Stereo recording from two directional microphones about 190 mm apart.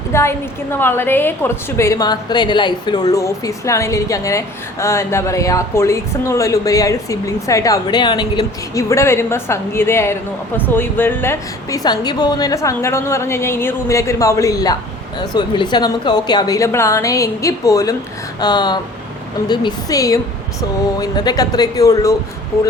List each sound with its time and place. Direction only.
0.1 s a woman's voice: 15° left (ahead or behind)